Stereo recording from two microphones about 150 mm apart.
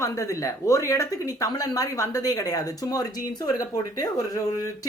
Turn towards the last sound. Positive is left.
turn(degrees=20)  # may be behind; listen again after turning